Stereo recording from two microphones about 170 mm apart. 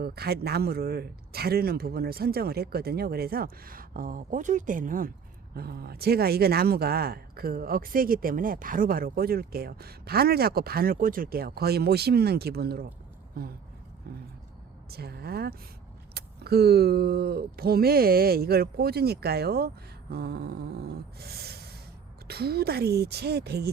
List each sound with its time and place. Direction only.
0.0 s speech: 70° right (ahead or behind)
5.5 s speech: 65° right (ahead or behind)